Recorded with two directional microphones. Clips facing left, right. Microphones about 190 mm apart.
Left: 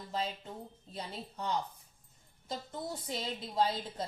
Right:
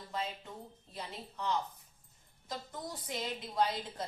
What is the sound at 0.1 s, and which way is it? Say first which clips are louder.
A woman's voice: left 2 dB; 35° left (ahead or behind).